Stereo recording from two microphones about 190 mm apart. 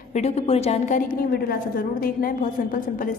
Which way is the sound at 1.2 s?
50° left (ahead or behind).